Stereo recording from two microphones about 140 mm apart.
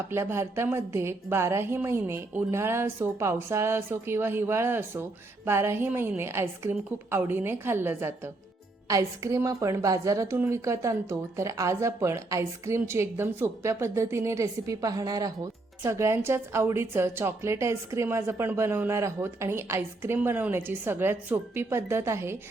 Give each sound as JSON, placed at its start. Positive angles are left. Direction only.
{"t": 0.1, "sound": "a woman's voice", "side_deg": -15}